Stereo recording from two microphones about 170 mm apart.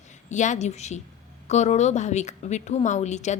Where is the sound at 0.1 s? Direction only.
45° left (ahead or behind).